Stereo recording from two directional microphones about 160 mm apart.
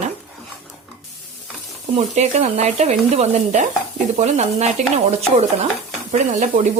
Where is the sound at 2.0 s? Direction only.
45° right (ahead or behind).